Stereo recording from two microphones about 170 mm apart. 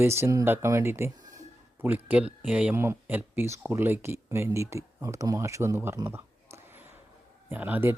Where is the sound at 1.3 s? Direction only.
10° right (ahead or behind).